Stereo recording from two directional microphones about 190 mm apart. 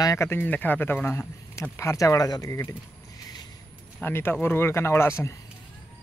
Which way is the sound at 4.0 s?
10° left (ahead or behind).